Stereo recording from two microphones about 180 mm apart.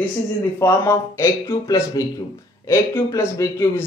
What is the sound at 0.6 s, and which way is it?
Speech, 15° left (ahead or behind).